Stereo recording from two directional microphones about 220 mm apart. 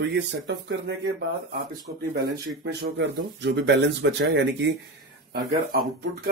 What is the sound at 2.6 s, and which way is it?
Speech, 50° right (ahead or behind).